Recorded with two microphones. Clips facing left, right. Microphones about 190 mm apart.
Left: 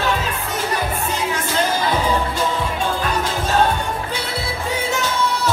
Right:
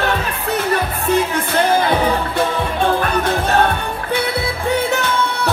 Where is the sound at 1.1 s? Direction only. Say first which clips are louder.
Right 6 dB; 60° right (ahead or behind).